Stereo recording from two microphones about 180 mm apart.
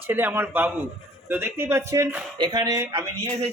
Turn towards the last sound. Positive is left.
turn(degrees=-15)  # may be behind; listen again after turning